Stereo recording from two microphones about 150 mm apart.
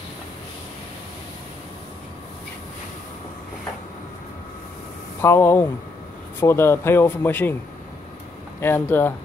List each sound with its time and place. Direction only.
5.2 s speech: 15° left (ahead or behind)
8.5 s speech: 15° left (ahead or behind)